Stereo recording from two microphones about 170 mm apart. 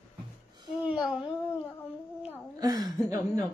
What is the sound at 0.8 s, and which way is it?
Babbling, 5° right (ahead or behind).